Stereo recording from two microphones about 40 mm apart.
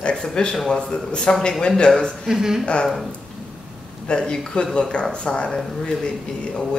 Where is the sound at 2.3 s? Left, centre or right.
Centre.